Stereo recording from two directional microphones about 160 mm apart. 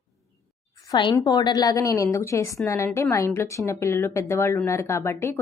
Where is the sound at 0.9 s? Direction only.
30° left (ahead or behind).